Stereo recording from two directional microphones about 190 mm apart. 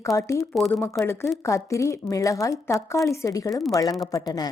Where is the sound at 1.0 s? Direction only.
10° left (ahead or behind).